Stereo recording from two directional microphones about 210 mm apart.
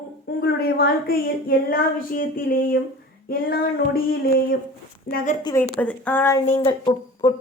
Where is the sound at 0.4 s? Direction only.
45° left (ahead or behind).